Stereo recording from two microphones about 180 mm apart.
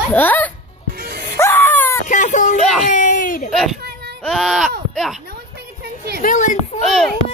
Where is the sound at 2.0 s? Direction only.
45° left (ahead or behind).